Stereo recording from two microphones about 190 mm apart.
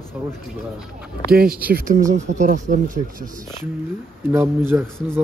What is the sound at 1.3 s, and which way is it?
Speech, 50° right (ahead or behind).